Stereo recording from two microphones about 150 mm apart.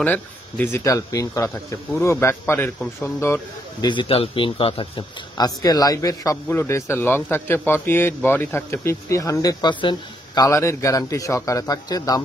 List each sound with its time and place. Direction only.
0.0 s speech: 10° left (ahead or behind)
3.8 s speech: 30° left (ahead or behind)
5.6 s speech: 25° left (ahead or behind)